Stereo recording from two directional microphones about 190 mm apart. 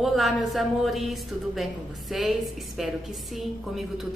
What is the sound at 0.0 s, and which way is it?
A woman's voice, centre (ahead or behind).